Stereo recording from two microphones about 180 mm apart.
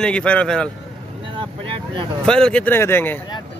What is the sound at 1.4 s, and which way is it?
Vehicle, 30° right (ahead or behind).